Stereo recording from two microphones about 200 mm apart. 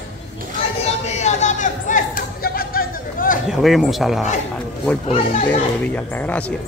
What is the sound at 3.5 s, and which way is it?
Speech, centre (ahead or behind).